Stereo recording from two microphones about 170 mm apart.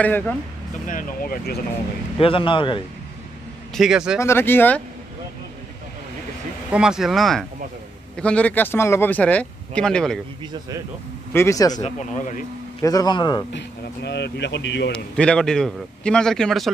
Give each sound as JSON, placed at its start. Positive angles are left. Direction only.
{"t": 0.0, "sound": "speech", "side_deg": 10}
{"t": 0.8, "sound": "speech", "side_deg": 55}
{"t": 2.1, "sound": "a man's voice", "side_deg": 30}
{"t": 3.7, "sound": "a man's voice", "side_deg": 0}
{"t": 4.2, "sound": "speech", "side_deg": 15}
{"t": 6.7, "sound": "a man's voice", "side_deg": -5}
{"t": 11.3, "sound": "a man's voice", "side_deg": 20}
{"t": 11.8, "sound": "speech", "side_deg": 50}
{"t": 12.8, "sound": "a man's voice", "side_deg": 20}
{"t": 13.5, "sound": "speech", "side_deg": 90}
{"t": 14.9, "sound": "a man's voice", "side_deg": 5}